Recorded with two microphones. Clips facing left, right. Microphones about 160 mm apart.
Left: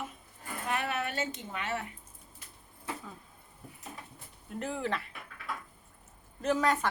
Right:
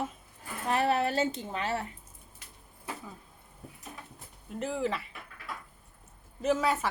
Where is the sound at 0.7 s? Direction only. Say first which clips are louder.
Right 7 dB; 35° right (ahead or behind).